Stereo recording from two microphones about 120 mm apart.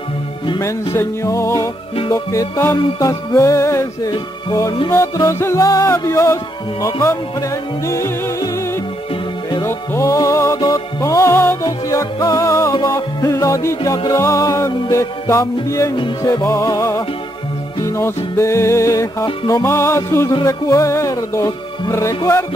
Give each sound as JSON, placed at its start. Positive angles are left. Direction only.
{"t": 0.9, "sound": "music", "side_deg": 25}